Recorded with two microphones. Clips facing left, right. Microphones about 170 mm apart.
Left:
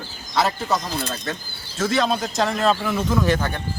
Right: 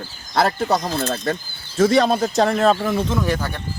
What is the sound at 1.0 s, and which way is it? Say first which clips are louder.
Speech: right 6 dB; 60° right (ahead or behind).